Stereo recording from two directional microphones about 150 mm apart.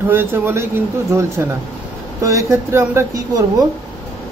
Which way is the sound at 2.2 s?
20° right (ahead or behind).